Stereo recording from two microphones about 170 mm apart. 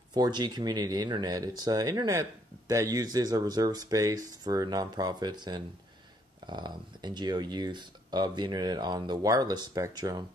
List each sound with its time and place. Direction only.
0.1 s speech: 25° right (ahead or behind)